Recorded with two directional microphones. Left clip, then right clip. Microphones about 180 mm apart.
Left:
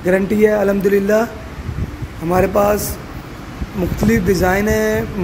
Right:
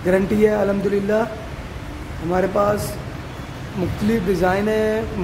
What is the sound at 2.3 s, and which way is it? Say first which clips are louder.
Speech: left 4 dB; 20° left (ahead or behind).